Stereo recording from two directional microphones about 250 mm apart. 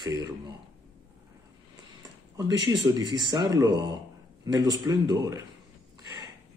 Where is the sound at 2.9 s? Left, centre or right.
Centre.